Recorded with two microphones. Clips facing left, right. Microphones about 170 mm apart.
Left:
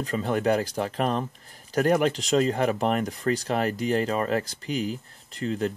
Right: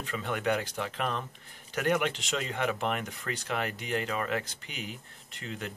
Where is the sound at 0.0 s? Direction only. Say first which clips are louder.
Left 7 dB; 35° left (ahead or behind).